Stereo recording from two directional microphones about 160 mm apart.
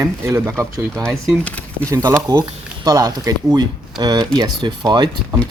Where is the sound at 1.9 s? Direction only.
15° right (ahead or behind).